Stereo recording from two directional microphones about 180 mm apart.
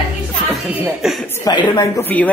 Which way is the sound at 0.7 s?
5° right (ahead or behind).